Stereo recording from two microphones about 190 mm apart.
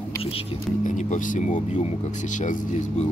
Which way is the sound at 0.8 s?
40° left (ahead or behind).